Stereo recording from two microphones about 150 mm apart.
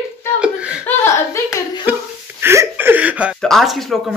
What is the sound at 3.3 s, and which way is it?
Speech, centre (ahead or behind).